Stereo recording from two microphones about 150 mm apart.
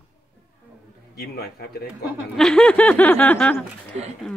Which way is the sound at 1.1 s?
90° left.